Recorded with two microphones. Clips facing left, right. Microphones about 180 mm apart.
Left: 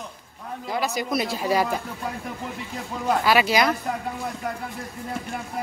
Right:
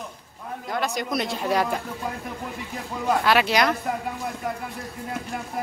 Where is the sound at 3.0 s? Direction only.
Centre (ahead or behind).